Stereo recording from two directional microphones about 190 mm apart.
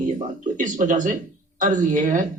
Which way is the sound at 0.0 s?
45° right (ahead or behind).